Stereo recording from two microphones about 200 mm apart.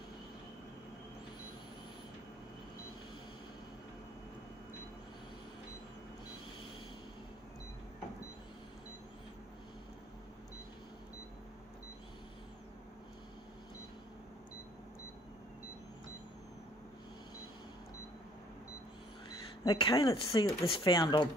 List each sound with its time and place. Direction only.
19.6 s speech: 20° left (ahead or behind)